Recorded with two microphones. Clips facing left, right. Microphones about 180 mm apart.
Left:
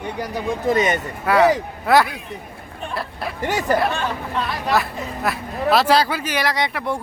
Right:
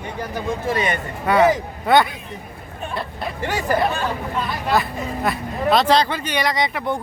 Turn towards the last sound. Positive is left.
turn(degrees=0)  # may be behind; listen again after turning